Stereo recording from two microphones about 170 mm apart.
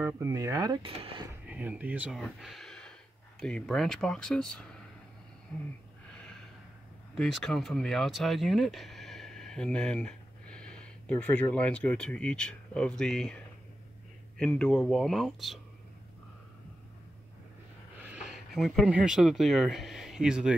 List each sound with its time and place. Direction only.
0.0 s speech: 15° right (ahead or behind)
0.9 s speech: 35° right (ahead or behind)
1.5 s speech: 10° right (ahead or behind)
7.2 s speech: centre (ahead or behind)
14.4 s speech: 5° left (ahead or behind)
18.5 s speech: centre (ahead or behind)